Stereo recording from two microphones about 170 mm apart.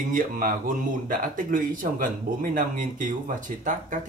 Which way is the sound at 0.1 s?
55° right (ahead or behind).